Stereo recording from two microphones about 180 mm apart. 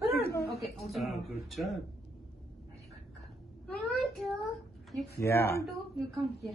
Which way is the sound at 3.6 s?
Centre (ahead or behind).